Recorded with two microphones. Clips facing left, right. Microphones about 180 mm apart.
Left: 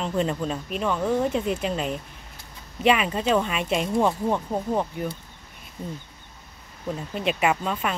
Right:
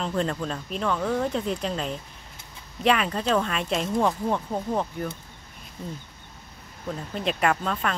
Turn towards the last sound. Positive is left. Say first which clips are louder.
# left 1 dB
turn(degrees=5)  # may be behind; listen again after turning